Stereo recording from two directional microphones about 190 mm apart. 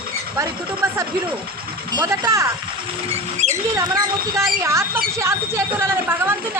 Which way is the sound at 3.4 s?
40° right (ahead or behind).